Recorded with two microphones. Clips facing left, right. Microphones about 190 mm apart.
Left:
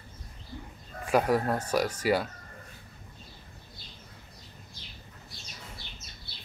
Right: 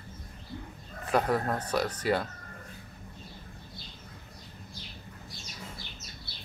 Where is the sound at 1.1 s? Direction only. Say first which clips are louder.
Left 2 dB; 10° left (ahead or behind).